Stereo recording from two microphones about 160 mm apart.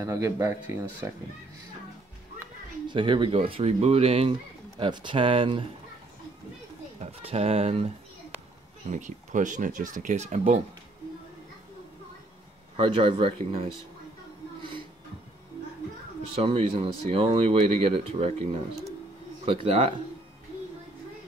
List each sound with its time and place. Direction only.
0.0 s speech: 15° right (ahead or behind)
2.9 s speech: 30° right (ahead or behind)
7.0 s speech: 40° right (ahead or behind)
8.9 s speech: 50° right (ahead or behind)
12.7 s speech: 35° right (ahead or behind)
16.3 s speech: 35° right (ahead or behind)